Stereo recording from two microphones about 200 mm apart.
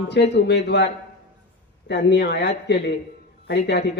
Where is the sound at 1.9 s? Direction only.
60° left (ahead or behind).